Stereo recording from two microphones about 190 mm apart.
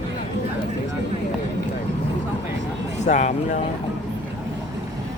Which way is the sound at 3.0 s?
40° left (ahead or behind).